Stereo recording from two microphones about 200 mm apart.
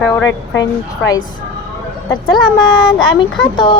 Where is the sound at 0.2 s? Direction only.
70° left (ahead or behind).